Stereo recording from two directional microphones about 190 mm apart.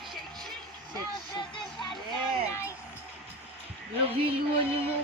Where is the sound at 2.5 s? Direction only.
15° left (ahead or behind).